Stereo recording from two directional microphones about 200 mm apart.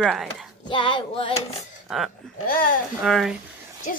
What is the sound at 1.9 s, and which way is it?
Speech, centre (ahead or behind).